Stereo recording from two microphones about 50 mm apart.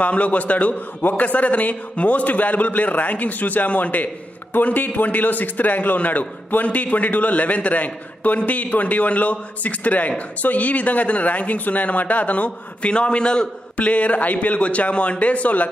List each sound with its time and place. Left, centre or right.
0.0 s a man's voice: left